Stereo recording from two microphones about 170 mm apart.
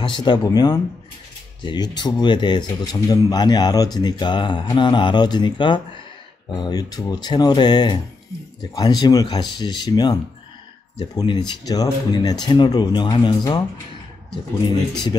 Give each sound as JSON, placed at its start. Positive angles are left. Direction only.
{"t": 0.0, "sound": "speech", "side_deg": 25}